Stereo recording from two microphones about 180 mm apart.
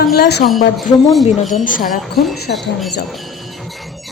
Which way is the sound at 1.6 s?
50° left (ahead or behind).